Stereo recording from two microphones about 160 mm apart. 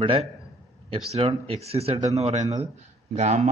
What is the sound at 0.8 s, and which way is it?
Speech, 35° right (ahead or behind).